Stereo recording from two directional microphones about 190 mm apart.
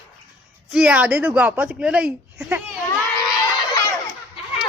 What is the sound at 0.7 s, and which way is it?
Speech, 5° right (ahead or behind).